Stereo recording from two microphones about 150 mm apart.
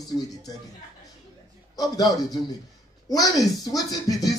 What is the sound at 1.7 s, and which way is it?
Speech, 25° left (ahead or behind).